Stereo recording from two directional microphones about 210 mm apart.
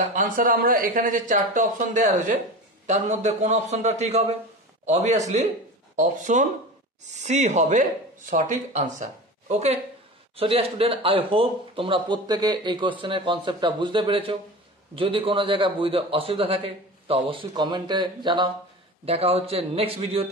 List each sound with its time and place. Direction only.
0.1 s speech: 40° right (ahead or behind)